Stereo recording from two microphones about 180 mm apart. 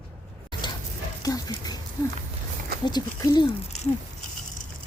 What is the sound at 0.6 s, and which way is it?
Dog, 25° left (ahead or behind).